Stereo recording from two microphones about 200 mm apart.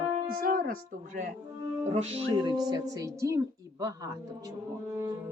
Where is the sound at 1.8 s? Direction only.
30° right (ahead or behind).